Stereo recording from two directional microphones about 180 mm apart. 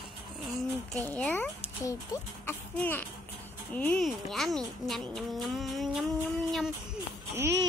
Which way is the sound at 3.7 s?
10° left (ahead or behind).